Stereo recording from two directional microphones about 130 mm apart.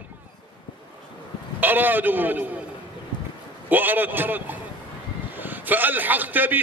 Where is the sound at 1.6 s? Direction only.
15° right (ahead or behind).